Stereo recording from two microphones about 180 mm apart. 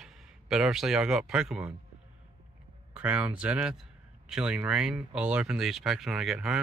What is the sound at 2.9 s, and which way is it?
Speech, 10° right (ahead or behind).